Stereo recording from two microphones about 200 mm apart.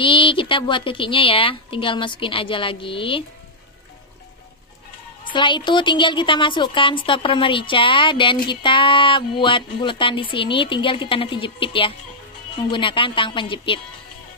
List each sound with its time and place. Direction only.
0.0 s a woman's voice: 25° left (ahead or behind)
5.2 s a woman's voice: 25° left (ahead or behind)